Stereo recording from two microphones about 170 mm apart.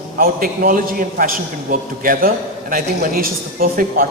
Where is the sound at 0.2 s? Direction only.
60° right (ahead or behind).